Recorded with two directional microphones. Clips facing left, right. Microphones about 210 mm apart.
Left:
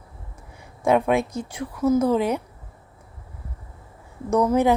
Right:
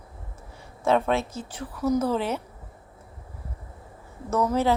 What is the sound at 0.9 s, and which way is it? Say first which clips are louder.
A woman's voice: left 3 dB; 15° left (ahead or behind).